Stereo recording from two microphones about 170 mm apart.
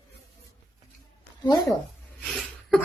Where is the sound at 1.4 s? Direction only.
20° left (ahead or behind).